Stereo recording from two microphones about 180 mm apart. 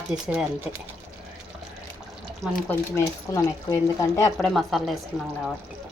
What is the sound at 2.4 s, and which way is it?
Speech, 10° left (ahead or behind).